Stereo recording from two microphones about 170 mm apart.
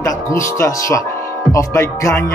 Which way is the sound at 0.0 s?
15° left (ahead or behind).